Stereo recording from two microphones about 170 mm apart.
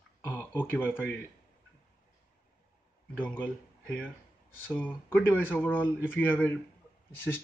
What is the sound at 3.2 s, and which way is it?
Speech, 10° left (ahead or behind).